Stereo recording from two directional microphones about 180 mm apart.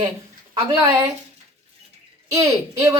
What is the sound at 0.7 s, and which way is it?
Speech, 15° right (ahead or behind).